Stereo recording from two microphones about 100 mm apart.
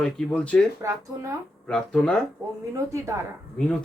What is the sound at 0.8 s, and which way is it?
Speech, 30° right (ahead or behind).